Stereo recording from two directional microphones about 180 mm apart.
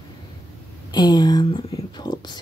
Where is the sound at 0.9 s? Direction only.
20° left (ahead or behind).